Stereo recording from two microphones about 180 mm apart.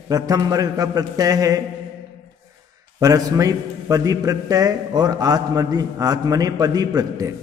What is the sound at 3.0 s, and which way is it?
A man's voice, 20° right (ahead or behind).